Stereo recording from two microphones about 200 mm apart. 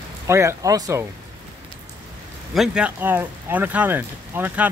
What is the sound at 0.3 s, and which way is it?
Speech, 15° right (ahead or behind).